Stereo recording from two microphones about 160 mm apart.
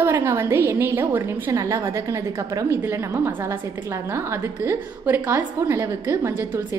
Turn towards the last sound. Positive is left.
turn(degrees=-15)  # may be behind; listen again after turning